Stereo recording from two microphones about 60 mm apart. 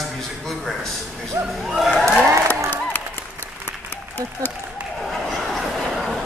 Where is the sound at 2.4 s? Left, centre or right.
Left.